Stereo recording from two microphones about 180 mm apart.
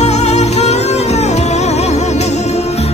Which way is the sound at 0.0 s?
35° left (ahead or behind).